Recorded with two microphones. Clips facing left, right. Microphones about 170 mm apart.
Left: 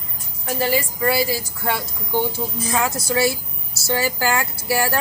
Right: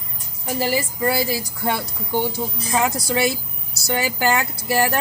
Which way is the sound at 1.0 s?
20° right (ahead or behind).